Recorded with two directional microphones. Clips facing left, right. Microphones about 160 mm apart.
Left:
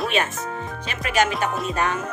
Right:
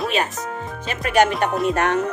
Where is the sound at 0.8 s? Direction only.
55° right (ahead or behind).